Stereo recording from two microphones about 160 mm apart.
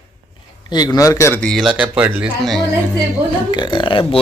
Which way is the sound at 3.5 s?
30° left (ahead or behind).